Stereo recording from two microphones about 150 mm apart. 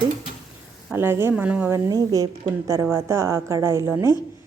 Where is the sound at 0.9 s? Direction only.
15° right (ahead or behind).